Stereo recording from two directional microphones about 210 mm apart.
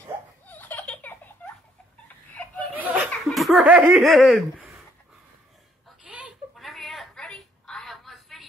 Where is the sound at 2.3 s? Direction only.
10° left (ahead or behind).